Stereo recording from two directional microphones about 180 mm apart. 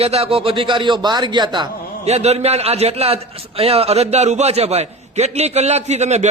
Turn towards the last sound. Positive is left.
turn(degrees=-40)  # may be behind; listen again after turning